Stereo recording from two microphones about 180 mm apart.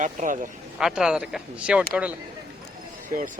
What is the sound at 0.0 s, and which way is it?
Speech, 45° right (ahead or behind).